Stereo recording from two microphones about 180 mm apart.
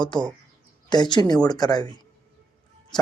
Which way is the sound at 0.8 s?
25° left (ahead or behind).